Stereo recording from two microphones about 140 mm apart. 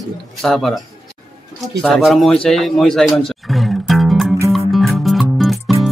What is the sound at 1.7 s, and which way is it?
A man's voice, 5° left (ahead or behind).